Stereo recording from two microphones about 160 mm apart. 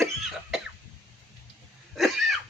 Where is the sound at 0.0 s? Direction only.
Centre (ahead or behind).